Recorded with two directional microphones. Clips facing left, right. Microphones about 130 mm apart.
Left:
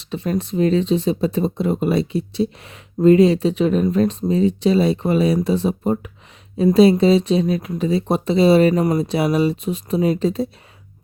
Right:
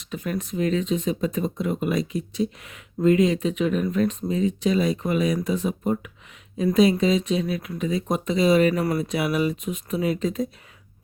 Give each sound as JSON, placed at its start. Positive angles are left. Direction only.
{"t": 0.0, "sound": "speech", "side_deg": 30}